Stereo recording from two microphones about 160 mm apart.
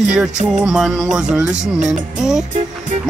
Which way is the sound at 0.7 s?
Centre (ahead or behind).